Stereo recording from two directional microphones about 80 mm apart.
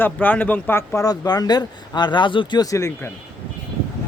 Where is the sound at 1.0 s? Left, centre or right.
Left.